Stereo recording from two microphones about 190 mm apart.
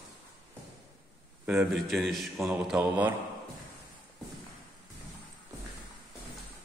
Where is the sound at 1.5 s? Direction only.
Centre (ahead or behind).